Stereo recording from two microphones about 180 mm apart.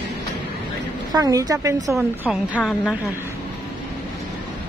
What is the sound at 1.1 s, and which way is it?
Speech, 20° right (ahead or behind).